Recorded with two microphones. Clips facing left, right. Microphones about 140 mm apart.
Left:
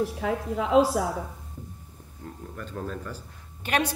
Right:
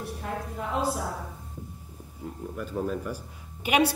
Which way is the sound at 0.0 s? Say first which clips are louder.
Left 7 dB; 85° left.